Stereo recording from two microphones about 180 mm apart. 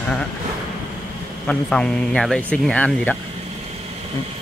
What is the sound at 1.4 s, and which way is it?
Speech, 5° left (ahead or behind).